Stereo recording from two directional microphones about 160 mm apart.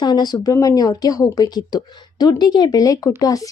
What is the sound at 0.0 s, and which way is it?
Speech, 25° left (ahead or behind).